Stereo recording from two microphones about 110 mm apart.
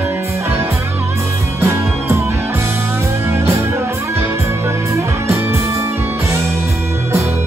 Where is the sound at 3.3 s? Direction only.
25° right (ahead or behind).